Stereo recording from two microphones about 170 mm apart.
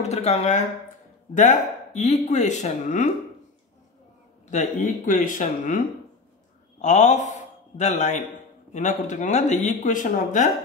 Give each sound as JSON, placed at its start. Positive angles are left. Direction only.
{"t": 0.0, "sound": "speech", "side_deg": 40}
{"t": 4.5, "sound": "speech", "side_deg": 45}
{"t": 6.8, "sound": "a man's voice", "side_deg": 40}